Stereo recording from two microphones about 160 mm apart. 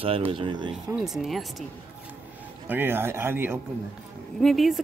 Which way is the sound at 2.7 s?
10° right (ahead or behind).